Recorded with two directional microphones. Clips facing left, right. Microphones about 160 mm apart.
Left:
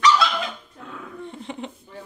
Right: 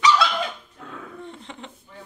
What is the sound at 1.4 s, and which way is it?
Speech, 15° left (ahead or behind).